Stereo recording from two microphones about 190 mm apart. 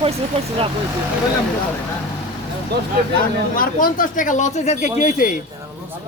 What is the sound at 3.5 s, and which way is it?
A man's voice, 45° left (ahead or behind).